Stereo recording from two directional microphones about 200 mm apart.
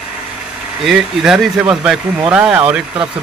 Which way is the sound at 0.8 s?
Centre (ahead or behind).